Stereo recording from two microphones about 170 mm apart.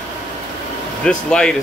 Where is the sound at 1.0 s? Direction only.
5° left (ahead or behind).